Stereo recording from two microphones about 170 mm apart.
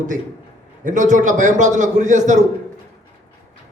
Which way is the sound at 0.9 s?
50° right (ahead or behind).